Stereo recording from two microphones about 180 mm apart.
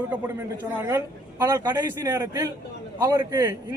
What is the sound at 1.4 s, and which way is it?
A man's voice, 20° right (ahead or behind).